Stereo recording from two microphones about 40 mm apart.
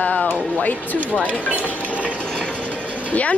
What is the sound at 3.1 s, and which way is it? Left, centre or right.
Speech, left.